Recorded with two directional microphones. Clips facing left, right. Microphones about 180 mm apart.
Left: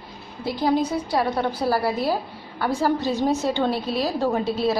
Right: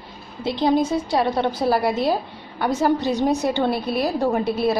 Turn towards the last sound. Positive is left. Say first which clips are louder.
# right 2 dB
turn(degrees=-15)  # may be behind; listen again after turning